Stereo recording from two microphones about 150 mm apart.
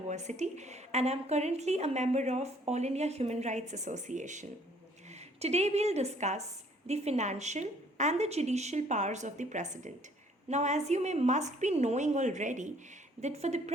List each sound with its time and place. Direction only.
0.1 s a woman's voice: 50° right (ahead or behind)